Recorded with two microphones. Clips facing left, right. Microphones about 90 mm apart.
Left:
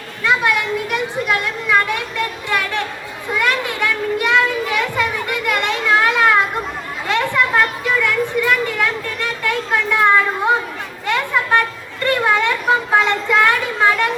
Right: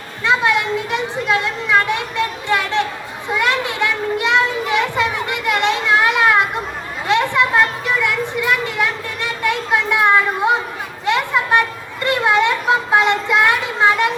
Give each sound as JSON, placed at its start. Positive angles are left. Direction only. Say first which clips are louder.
{"t": 0.3, "sound": "speech", "louder": "right 1 dB", "side_deg": -25}
{"t": 3.3, "sound": "children playing", "louder": "right 1 dB", "side_deg": -20}
{"t": 7.1, "sound": "a sound", "louder": "right 2 dB", "side_deg": -20}